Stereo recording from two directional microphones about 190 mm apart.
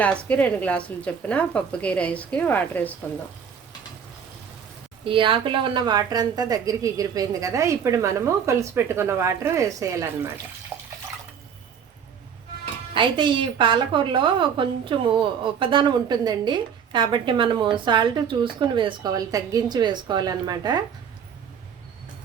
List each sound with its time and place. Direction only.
0.0 s speech: 5° left (ahead or behind)
5.0 s a woman's voice: 25° right (ahead or behind)
10.7 s water: 15° right (ahead or behind)
12.9 s a woman's voice: 25° right (ahead or behind)